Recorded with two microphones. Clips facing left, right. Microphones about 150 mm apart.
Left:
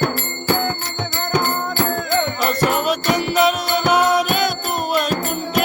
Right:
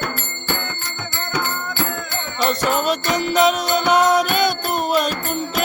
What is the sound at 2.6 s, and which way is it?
Music, 10° left (ahead or behind).